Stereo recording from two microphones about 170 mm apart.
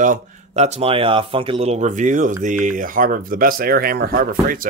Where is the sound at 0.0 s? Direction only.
45° right (ahead or behind).